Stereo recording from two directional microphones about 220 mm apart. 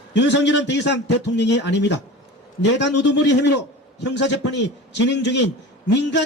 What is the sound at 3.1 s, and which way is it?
A man's voice, 50° left (ahead or behind).